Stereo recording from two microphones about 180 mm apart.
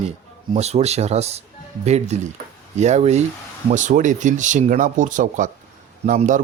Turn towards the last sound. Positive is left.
turn(degrees=-45)  # may be behind; listen again after turning